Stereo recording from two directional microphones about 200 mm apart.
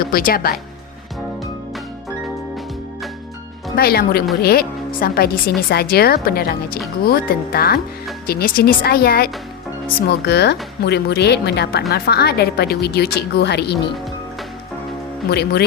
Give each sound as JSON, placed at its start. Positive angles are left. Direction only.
{"t": 0.0, "sound": "speech", "side_deg": 45}
{"t": 3.8, "sound": "speech", "side_deg": 50}
{"t": 15.3, "sound": "speech", "side_deg": 55}